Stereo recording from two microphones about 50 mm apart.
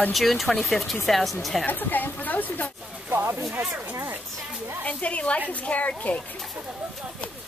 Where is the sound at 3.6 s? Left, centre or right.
Right.